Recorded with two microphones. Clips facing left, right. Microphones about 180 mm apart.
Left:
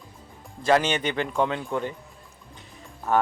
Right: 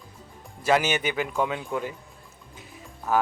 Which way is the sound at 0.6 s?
5° right (ahead or behind).